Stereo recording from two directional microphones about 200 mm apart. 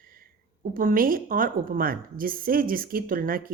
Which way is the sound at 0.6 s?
45° right (ahead or behind).